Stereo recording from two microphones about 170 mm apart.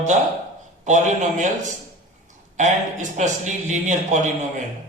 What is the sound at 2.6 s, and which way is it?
A man's voice, 45° right (ahead or behind).